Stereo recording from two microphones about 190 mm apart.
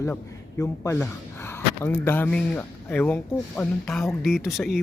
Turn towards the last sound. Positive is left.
turn(degrees=0)  # may be behind; listen again after turning